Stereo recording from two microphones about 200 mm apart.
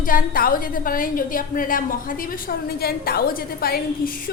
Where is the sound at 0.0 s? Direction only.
45° left (ahead or behind).